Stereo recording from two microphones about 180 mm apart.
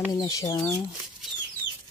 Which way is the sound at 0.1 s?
20° left (ahead or behind).